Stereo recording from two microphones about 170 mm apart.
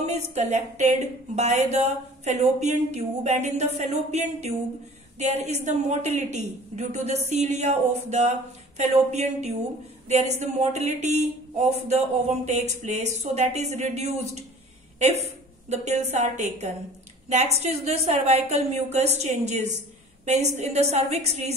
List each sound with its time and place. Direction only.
0.0 s a woman's voice: 40° right (ahead or behind)
15.7 s speech: 40° right (ahead or behind)